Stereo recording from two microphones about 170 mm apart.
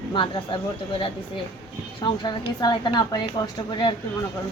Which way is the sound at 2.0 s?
25° left (ahead or behind).